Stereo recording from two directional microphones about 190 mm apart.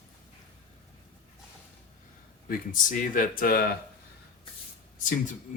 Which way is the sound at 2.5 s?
45° left (ahead or behind).